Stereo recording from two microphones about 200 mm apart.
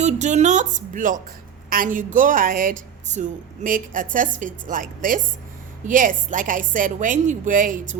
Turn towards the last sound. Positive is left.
turn(degrees=-40)  # may be behind; listen again after turning